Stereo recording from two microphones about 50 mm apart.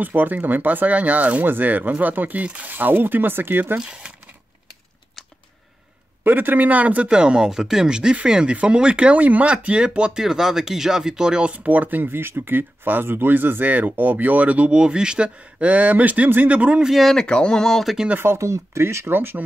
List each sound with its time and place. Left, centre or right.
0.0 s speech: right
2.7 s speech: right
3.8 s speech: centre
6.2 s speech: right
7.1 s speech: centre
11.5 s speech: right
17.0 s speech: centre
18.4 s speech: right
19.1 s speech: right